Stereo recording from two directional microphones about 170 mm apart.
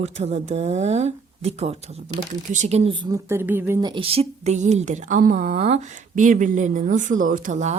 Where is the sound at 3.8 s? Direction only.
25° right (ahead or behind); by 7.8 s 45° right (ahead or behind).